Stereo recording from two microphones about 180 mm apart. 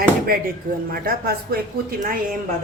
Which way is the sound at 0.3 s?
55° right (ahead or behind).